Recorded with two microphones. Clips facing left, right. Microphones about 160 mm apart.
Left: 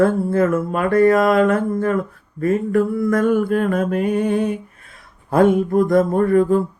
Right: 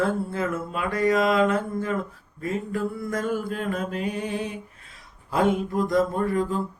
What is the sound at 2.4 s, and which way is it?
Mantra, 60° left (ahead or behind).